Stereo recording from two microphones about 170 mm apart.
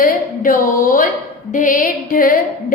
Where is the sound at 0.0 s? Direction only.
55° left (ahead or behind).